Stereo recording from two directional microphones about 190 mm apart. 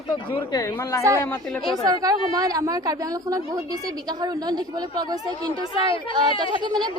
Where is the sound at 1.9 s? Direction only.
20° right (ahead or behind).